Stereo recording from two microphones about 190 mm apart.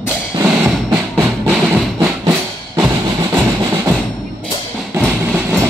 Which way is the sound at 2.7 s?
15° right (ahead or behind).